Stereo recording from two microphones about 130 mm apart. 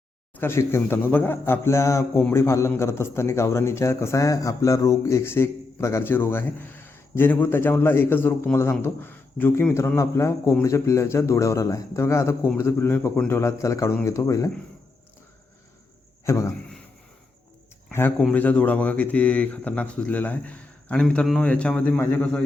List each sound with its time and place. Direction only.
0.3 s a man's voice: 20° left (ahead or behind)
16.2 s a man's voice: 25° left (ahead or behind)
18.3 s speech: 10° left (ahead or behind)